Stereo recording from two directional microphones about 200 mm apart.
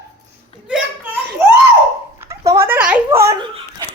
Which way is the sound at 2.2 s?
15° right (ahead or behind).